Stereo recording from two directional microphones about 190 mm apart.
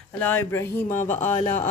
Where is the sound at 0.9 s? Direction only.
40° left (ahead or behind).